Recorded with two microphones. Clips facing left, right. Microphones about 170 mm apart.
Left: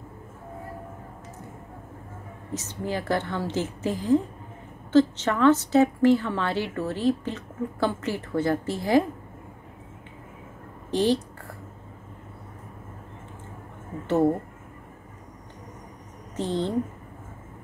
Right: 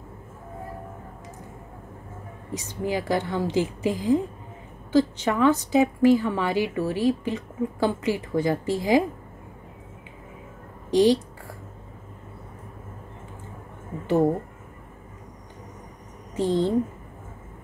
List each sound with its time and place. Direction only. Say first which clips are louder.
2.5 s a woman's voice: right 3 dB; 15° right (ahead or behind)
10.9 s a woman's voice: right 4 dB; 15° right (ahead or behind)
16.3 s a woman's voice: right 4 dB; 10° right (ahead or behind)